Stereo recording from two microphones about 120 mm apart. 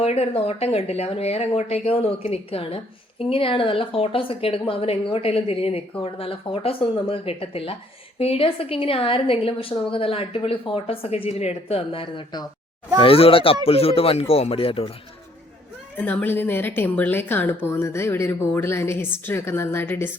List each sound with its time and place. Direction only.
0.0 s speech: 60° left (ahead or behind)
16.0 s a woman's voice: 15° left (ahead or behind)